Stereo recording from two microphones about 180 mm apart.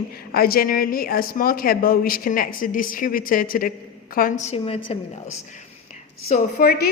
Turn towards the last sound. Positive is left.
turn(degrees=45)  # may be behind; listen again after turning